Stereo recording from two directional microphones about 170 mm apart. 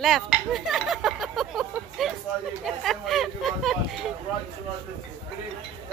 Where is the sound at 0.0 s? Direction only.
Centre (ahead or behind).